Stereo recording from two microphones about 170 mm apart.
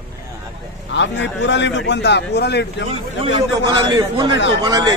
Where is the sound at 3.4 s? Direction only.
25° right (ahead or behind).